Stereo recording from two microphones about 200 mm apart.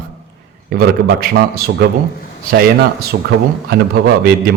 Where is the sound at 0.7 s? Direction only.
50° right (ahead or behind).